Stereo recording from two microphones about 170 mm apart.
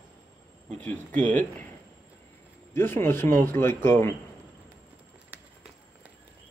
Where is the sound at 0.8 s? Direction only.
10° left (ahead or behind).